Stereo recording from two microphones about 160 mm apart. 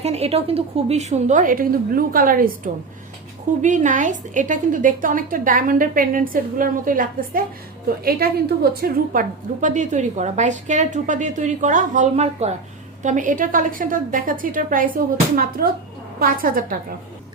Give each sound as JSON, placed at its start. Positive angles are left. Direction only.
{"t": 0.0, "sound": "a woman's voice", "side_deg": -40}
{"t": 3.6, "sound": "a woman's voice", "side_deg": -50}
{"t": 8.2, "sound": "a woman's voice", "side_deg": -75}
{"t": 8.7, "sound": "a woman's voice", "side_deg": -65}